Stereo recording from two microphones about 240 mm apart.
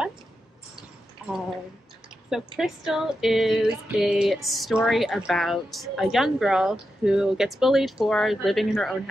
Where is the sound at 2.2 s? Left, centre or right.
Centre.